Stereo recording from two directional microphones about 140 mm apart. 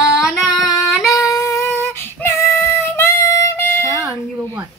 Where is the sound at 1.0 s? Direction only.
Centre (ahead or behind).